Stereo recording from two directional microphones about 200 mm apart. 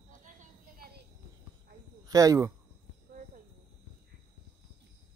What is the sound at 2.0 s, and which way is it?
Speech, 15° right (ahead or behind).